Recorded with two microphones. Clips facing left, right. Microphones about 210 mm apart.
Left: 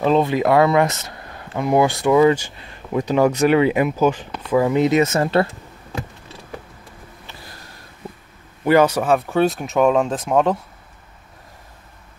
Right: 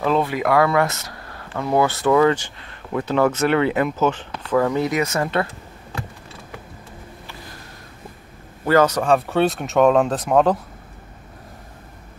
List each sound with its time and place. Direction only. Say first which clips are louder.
0.0 s speech: left 3 dB; 25° left (ahead or behind)
8.6 s speech: left 1 dB; 10° left (ahead or behind)